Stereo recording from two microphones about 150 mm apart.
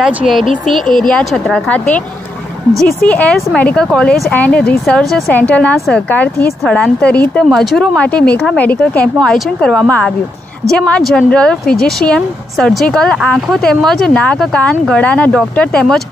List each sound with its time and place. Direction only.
0.0 s a woman's voice: centre (ahead or behind)
11.6 s speech: 85° left
12.0 s a woman's voice: 5° left (ahead or behind)